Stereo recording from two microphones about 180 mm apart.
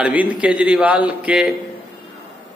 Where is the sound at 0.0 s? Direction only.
10° right (ahead or behind).